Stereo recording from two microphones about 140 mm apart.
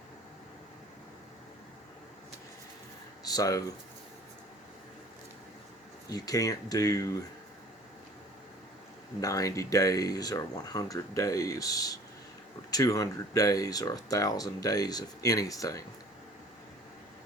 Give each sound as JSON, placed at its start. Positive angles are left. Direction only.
{"t": 3.2, "sound": "speech", "side_deg": 25}
{"t": 6.1, "sound": "speech", "side_deg": 25}
{"t": 9.2, "sound": "speech", "side_deg": 25}